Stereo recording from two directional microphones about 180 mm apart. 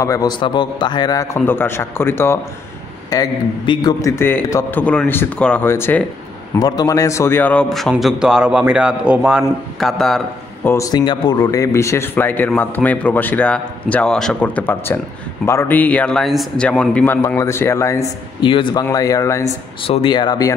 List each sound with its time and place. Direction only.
0.0 s a man's voice: 20° left (ahead or behind); by 10.7 s centre (ahead or behind)
10.7 s speech: 20° left (ahead or behind)
19.8 s speech: 30° left (ahead or behind)